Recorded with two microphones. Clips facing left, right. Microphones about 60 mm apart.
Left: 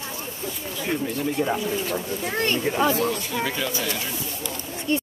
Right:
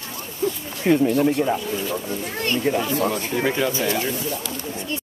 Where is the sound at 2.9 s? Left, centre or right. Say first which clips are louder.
Right 2 dB; right.